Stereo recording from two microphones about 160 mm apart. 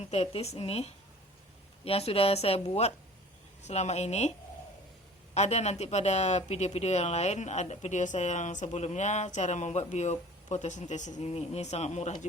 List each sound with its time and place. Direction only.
0.0 s a woman's voice: 40° left (ahead or behind)
5.3 s speech: 45° left (ahead or behind)